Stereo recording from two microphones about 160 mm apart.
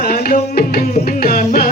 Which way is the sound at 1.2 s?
60° left (ahead or behind).